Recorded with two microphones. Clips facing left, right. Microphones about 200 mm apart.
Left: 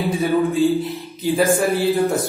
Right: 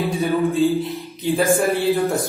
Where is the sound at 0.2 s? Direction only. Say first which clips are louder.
Left 1 dB; centre (ahead or behind).